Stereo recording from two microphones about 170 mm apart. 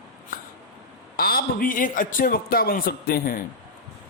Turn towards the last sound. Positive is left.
turn(degrees=55)  # may be behind; listen again after turning